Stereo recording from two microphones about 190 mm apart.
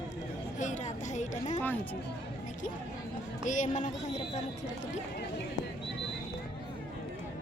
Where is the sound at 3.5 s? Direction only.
40° left (ahead or behind).